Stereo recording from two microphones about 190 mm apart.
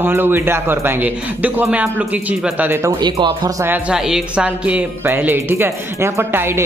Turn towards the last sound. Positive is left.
turn(degrees=-10)  # may be behind; listen again after turning